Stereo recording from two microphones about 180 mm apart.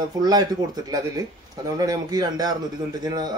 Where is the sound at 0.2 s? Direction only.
20° right (ahead or behind).